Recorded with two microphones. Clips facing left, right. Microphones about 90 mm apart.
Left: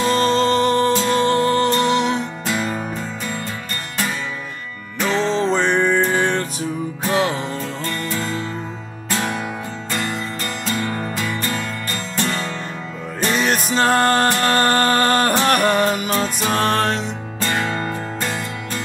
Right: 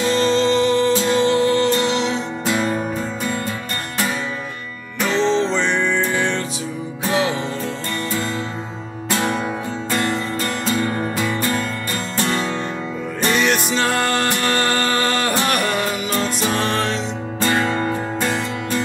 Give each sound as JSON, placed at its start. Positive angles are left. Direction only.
{"t": 0.1, "sound": "music", "side_deg": 45}
{"t": 2.4, "sound": "music", "side_deg": 0}
{"t": 5.2, "sound": "music", "side_deg": 45}
{"t": 10.0, "sound": "music", "side_deg": 5}
{"t": 13.4, "sound": "music", "side_deg": 40}
{"t": 17.6, "sound": "music", "side_deg": -5}